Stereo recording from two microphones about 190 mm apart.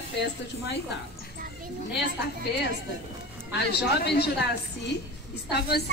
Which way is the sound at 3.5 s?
60° left (ahead or behind).